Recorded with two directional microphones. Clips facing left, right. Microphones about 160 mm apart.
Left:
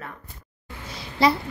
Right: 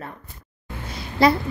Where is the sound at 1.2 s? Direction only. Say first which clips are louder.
Right 3 dB; 50° right (ahead or behind).